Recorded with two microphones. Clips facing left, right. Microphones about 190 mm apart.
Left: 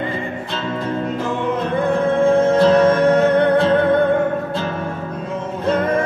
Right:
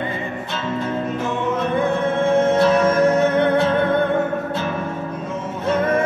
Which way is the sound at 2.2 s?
35° left (ahead or behind).